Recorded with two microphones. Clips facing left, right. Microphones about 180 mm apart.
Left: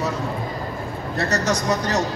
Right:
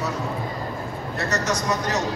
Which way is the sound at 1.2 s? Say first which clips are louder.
Left 2 dB; 35° left (ahead or behind).